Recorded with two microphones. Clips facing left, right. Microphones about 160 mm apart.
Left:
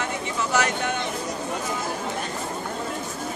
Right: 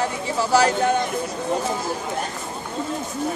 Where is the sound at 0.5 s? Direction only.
35° right (ahead or behind).